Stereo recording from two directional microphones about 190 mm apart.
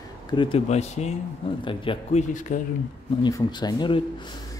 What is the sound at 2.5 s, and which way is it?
Speech, 45° left (ahead or behind).